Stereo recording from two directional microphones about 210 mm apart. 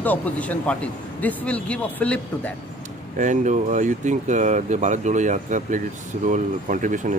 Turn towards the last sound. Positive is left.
turn(degrees=-35)  # may be behind; listen again after turning